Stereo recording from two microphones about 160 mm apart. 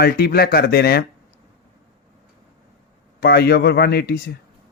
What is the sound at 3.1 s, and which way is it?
Speech, 75° left (ahead or behind).